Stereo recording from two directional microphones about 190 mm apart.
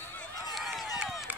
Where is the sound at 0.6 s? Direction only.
Centre (ahead or behind).